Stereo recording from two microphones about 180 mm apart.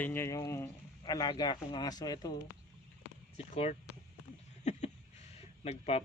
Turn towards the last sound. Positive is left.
turn(degrees=35)  # may be behind; listen again after turning